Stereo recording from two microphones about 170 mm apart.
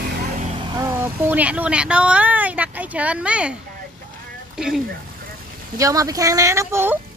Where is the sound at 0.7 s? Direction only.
20° right (ahead or behind).